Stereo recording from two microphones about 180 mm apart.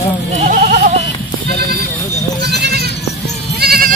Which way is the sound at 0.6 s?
45° right (ahead or behind).